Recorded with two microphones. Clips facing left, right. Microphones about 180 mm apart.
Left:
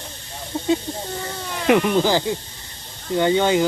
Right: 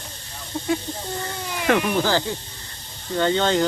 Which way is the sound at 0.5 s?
25° left (ahead or behind).